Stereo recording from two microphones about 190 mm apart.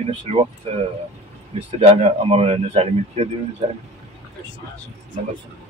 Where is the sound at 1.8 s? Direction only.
30° right (ahead or behind).